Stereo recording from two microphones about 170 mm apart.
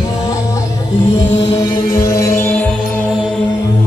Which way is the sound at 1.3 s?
40° left (ahead or behind).